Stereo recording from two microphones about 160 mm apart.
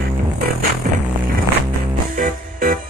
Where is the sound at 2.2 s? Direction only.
55° right (ahead or behind).